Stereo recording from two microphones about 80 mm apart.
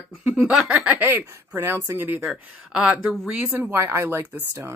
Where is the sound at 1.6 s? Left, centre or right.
Right.